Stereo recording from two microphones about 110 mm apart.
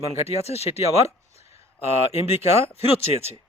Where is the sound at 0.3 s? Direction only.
70° left (ahead or behind).